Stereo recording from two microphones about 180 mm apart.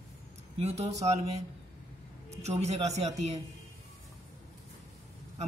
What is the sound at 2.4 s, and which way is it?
Speech, 40° right (ahead or behind).